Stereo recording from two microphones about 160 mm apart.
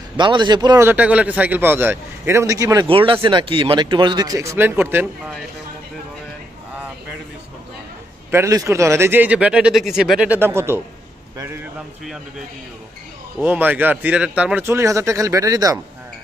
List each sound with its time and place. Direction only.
0.2 s speech: 30° right (ahead or behind)
0.8 s speech: 10° right (ahead or behind)
2.9 s speech: 35° right (ahead or behind); by 5.0 s 15° right (ahead or behind)
8.3 s speech: 20° right (ahead or behind)
13.4 s speech: 10° right (ahead or behind)